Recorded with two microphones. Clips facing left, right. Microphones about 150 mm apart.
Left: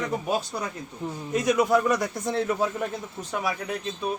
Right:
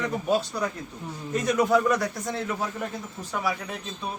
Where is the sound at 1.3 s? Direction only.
10° left (ahead or behind).